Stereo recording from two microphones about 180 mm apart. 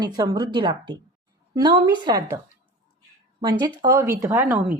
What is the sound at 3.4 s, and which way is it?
A woman's voice, 20° right (ahead or behind).